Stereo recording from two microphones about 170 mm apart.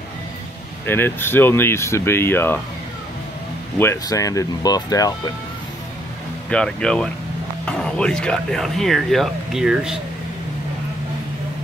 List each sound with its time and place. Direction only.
0.8 s speech: 10° left (ahead or behind)
3.7 s speech: 15° left (ahead or behind)
6.5 s speech: 5° left (ahead or behind)